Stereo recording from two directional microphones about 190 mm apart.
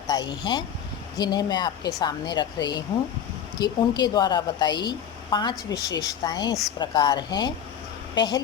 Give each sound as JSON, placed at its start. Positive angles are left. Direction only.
{"t": 0.1, "sound": "a woman's voice", "side_deg": 20}